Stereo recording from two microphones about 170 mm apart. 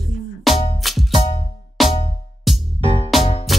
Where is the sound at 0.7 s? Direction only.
Centre (ahead or behind).